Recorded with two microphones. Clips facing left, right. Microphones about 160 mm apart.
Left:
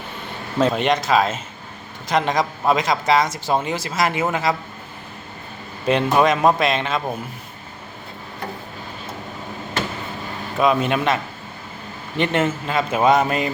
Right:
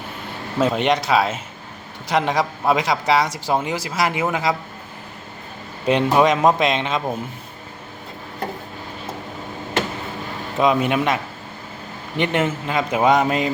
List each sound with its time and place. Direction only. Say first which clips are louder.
0.6 s a man's voice: even; 15° right (ahead or behind)
5.9 s a man's voice: right 1 dB; 15° right (ahead or behind)
10.6 s a man's voice: even; 15° right (ahead or behind)